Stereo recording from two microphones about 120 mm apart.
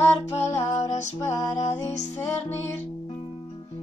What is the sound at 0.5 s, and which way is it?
Music, 30° left (ahead or behind).